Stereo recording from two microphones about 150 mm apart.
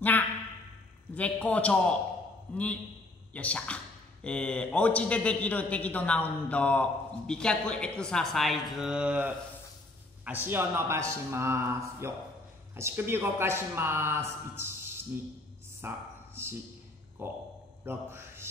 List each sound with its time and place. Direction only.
1.1 s a man's voice: 10° left (ahead or behind); by 14.7 s 15° right (ahead or behind)
15.8 s a man's voice: 15° right (ahead or behind)
17.2 s a man's voice: 15° right (ahead or behind)